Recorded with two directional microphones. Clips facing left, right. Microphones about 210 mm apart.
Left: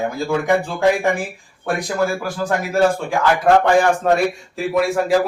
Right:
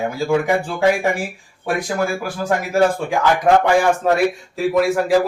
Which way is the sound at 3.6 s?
10° right (ahead or behind).